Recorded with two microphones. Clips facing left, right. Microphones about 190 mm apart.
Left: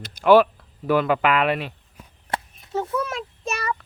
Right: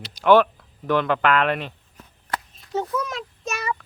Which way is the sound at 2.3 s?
25° left (ahead or behind).